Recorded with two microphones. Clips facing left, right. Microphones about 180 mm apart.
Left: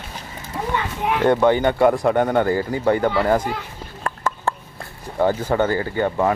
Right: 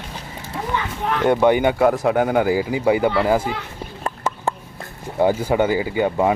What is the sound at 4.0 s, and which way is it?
Chicken, 20° right (ahead or behind).